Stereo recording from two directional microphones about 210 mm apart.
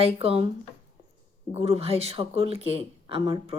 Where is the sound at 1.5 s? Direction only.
30° right (ahead or behind).